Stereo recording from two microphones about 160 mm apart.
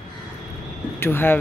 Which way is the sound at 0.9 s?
15° left (ahead or behind).